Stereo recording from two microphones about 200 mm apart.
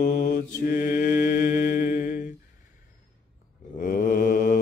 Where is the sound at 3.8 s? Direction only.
40° left (ahead or behind).